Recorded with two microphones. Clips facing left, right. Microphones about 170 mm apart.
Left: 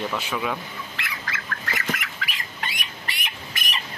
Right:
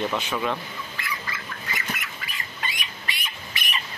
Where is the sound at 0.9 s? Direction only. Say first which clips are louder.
Right 1 dB; 80° left.